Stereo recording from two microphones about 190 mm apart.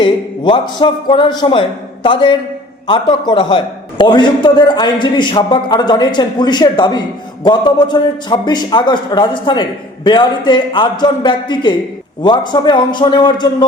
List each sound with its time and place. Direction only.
0.0 s a man's voice: 25° left (ahead or behind)